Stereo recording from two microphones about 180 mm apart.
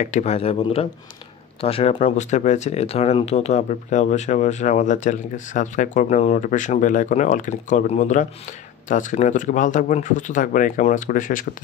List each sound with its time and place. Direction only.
0.0 s speech: 40° left (ahead or behind)